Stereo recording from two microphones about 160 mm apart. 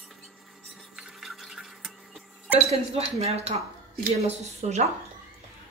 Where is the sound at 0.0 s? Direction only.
Centre (ahead or behind).